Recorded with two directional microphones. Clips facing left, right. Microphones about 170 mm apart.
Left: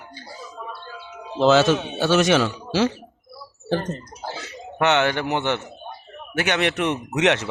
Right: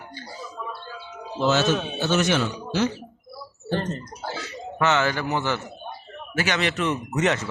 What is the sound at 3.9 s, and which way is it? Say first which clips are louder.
Speech: even; 20° left (ahead or behind).